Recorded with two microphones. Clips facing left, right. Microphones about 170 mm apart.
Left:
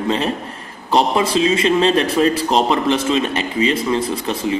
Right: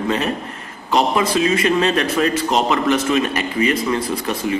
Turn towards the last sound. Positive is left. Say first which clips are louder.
# left 1 dB
turn(degrees=25)  # may be behind; listen again after turning